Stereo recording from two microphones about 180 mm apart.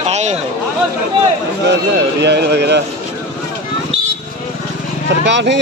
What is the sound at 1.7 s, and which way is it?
Speech, 70° right (ahead or behind).